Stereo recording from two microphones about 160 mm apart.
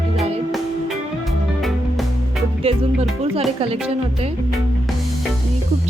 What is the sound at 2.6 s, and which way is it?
Speech, 35° right (ahead or behind).